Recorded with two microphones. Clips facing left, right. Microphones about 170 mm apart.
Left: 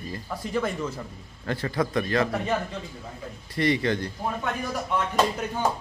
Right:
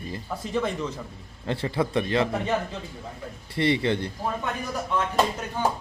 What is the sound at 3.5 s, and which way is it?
Speech, 25° right (ahead or behind).